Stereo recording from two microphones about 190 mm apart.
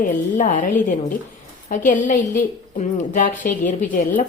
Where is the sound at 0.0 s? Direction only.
40° left (ahead or behind).